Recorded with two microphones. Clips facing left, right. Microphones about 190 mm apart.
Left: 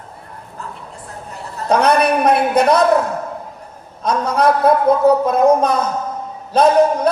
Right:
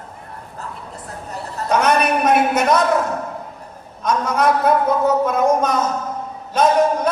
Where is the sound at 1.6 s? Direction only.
35° left (ahead or behind).